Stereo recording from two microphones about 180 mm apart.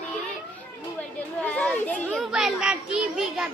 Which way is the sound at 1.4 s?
5° left (ahead or behind).